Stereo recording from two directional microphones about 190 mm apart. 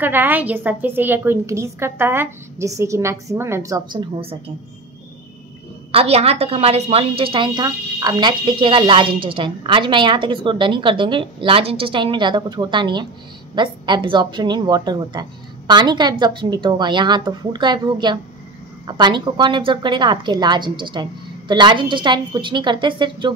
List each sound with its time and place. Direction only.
0.0 s a woman's voice: 10° right (ahead or behind); by 4.4 s 25° right (ahead or behind)
5.9 s a woman's voice: 30° right (ahead or behind)